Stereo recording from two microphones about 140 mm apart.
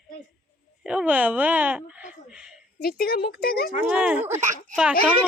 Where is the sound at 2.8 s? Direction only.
90° left.